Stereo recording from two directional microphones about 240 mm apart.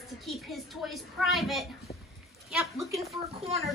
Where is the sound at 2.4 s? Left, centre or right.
Centre.